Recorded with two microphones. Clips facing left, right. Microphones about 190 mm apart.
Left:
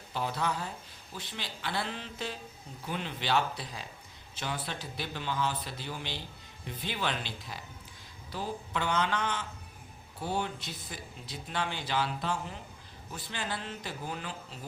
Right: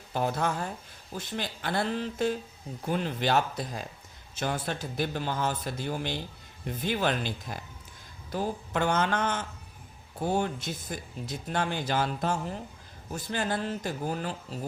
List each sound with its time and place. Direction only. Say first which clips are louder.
0.1 s speech: right 4 dB; 50° right (ahead or behind)